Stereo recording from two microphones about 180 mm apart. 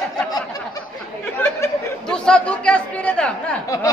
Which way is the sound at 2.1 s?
5° left (ahead or behind).